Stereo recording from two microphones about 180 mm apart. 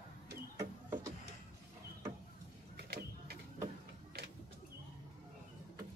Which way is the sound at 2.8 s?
60° right (ahead or behind).